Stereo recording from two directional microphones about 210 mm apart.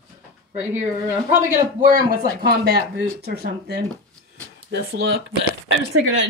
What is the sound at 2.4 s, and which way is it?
Speech, 50° right (ahead or behind).